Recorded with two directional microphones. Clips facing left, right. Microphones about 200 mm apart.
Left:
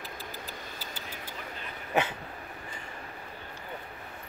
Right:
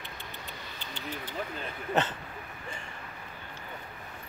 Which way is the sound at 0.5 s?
5° left (ahead or behind).